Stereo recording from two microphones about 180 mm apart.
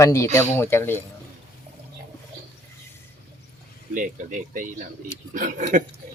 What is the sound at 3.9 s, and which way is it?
Speech, 45° right (ahead or behind).